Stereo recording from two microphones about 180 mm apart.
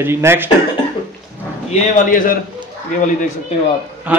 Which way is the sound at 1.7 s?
50° left (ahead or behind).